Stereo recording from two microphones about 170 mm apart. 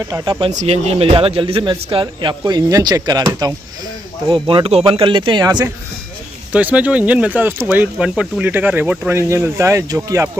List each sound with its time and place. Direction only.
0.1 s speech: 25° right (ahead or behind)
0.5 s speech: 40° right (ahead or behind); by 5.7 s 25° right (ahead or behind)
6.5 s speech: 10° right (ahead or behind)